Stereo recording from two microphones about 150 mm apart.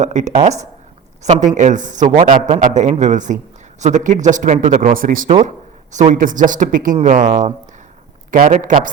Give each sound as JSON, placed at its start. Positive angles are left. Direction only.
{"t": 0.0, "sound": "speech", "side_deg": -50}